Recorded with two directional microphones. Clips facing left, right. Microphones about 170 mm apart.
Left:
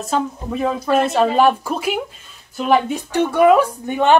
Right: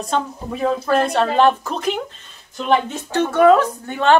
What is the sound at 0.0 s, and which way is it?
A woman's voice, centre (ahead or behind).